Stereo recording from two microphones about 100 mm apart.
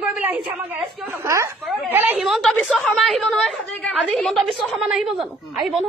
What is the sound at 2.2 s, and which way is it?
A woman's voice, centre (ahead or behind).